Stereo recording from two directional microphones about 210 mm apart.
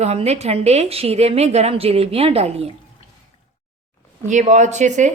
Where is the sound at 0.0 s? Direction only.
30° right (ahead or behind).